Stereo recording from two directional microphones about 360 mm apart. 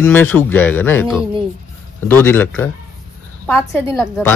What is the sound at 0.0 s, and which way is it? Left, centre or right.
A woman's voice, centre.